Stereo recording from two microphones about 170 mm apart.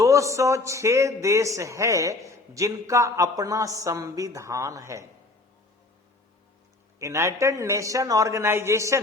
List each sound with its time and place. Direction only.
0.0 s a man's voice: 20° right (ahead or behind)
7.0 s a man's voice: 15° right (ahead or behind)